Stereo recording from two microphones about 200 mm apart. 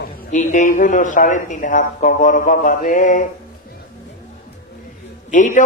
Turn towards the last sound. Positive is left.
turn(degrees=40)  # may be behind; listen again after turning